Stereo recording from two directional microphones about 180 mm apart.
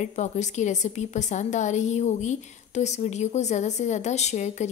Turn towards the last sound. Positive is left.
turn(degrees=40)  # may be behind; listen again after turning